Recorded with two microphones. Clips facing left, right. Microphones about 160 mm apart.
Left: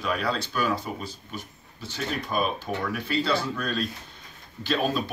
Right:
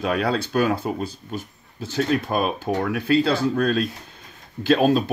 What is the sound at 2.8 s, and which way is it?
Speech, 60° right (ahead or behind).